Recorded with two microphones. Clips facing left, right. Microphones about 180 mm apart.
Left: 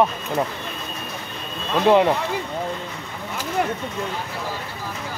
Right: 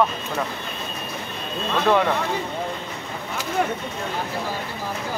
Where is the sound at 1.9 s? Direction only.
20° left (ahead or behind).